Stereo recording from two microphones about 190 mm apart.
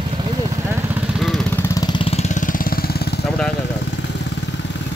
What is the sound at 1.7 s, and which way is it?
Vehicle, 25° left (ahead or behind).